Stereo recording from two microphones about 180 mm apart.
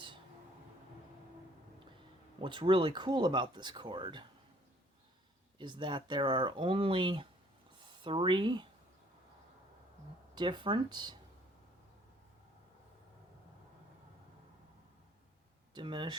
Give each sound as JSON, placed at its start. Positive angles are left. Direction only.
{"t": 2.4, "sound": "speech", "side_deg": -25}
{"t": 5.5, "sound": "speech", "side_deg": -25}
{"t": 10.3, "sound": "speech", "side_deg": -25}
{"t": 15.7, "sound": "speech", "side_deg": -25}